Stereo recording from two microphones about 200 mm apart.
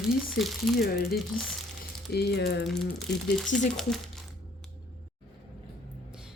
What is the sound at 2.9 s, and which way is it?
A woman's voice, centre (ahead or behind).